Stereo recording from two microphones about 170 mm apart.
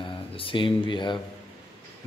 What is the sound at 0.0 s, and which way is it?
Speech, 30° left (ahead or behind).